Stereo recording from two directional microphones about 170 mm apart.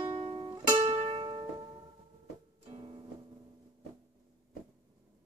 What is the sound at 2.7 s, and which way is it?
Music, 35° right (ahead or behind).